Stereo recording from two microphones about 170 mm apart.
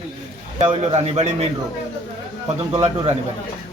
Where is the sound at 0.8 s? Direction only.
40° right (ahead or behind).